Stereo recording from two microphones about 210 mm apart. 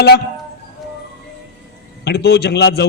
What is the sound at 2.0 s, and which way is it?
Speech, 50° left (ahead or behind).